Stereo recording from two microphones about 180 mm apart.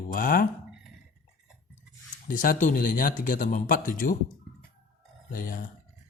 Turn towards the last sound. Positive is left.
turn(degrees=50)  # may be behind; listen again after turning